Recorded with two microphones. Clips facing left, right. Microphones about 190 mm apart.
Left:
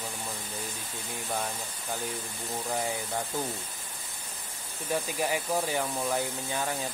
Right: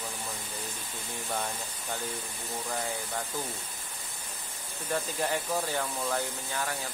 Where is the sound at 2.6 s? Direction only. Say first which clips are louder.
Left 3 dB; 15° left (ahead or behind).